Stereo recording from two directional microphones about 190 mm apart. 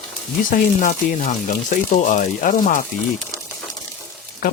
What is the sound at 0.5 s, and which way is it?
Speech, 45° left (ahead or behind).